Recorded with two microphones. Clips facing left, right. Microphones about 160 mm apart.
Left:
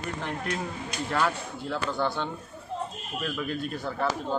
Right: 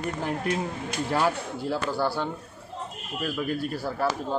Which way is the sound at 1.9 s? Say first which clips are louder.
Right 2 dB; 5° right (ahead or behind).